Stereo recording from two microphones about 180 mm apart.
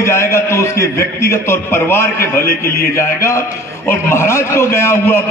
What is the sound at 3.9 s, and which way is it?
A man's voice, 15° left (ahead or behind).